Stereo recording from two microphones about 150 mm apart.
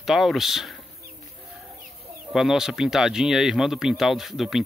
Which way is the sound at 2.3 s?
Centre (ahead or behind).